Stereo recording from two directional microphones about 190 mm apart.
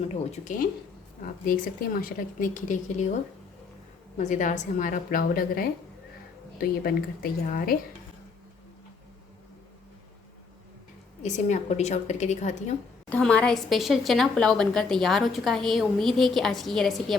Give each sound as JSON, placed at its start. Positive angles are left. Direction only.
{"t": 0.0, "sound": "a woman's voice", "side_deg": 35}
{"t": 4.2, "sound": "a woman's voice", "side_deg": 40}
{"t": 11.2, "sound": "a woman's voice", "side_deg": 40}
{"t": 13.1, "sound": "a woman's voice", "side_deg": 5}